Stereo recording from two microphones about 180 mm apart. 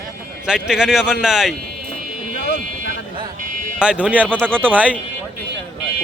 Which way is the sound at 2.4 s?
80° left.